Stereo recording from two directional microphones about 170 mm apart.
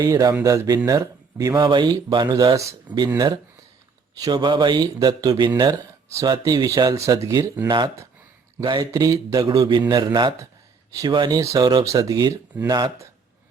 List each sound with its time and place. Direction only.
0.0 s speech: 20° right (ahead or behind)
4.1 s speech: 20° right (ahead or behind)